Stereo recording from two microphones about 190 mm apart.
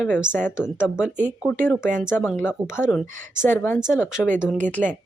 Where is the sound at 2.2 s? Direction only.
10° left (ahead or behind).